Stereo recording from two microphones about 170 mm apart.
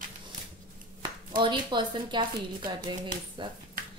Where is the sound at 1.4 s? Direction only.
30° right (ahead or behind).